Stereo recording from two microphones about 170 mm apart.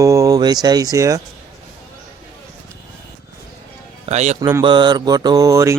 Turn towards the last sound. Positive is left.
turn(degrees=-20)  # may be behind; listen again after turning